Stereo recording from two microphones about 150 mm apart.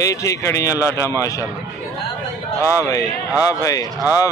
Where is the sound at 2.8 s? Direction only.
25° left (ahead or behind).